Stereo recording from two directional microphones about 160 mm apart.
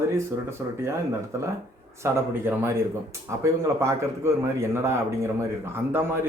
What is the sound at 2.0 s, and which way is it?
Speech, 15° right (ahead or behind).